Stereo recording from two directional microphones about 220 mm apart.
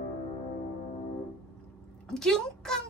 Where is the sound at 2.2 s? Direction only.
5° left (ahead or behind).